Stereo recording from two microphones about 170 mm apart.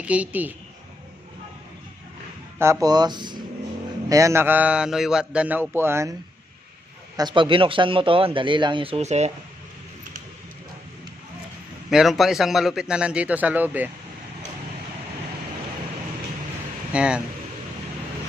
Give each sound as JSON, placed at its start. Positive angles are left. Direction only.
{"t": 0.0, "sound": "speech", "side_deg": -10}
{"t": 2.6, "sound": "speech", "side_deg": -20}
{"t": 7.2, "sound": "speech", "side_deg": -25}
{"t": 11.9, "sound": "a man's voice", "side_deg": 0}
{"t": 16.9, "sound": "a man's voice", "side_deg": -5}